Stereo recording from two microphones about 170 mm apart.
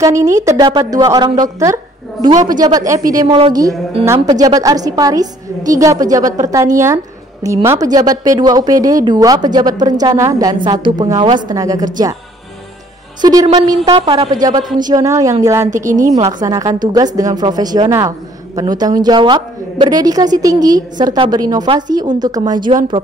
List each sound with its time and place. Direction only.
0.0 s speech: 20° right (ahead or behind)
13.2 s speech: 25° right (ahead or behind)
13.9 s speech: 35° right (ahead or behind)
14.3 s a woman's voice: 20° right (ahead or behind)